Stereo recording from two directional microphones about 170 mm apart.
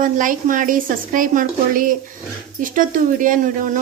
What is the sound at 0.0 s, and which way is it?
Speech, 50° right (ahead or behind).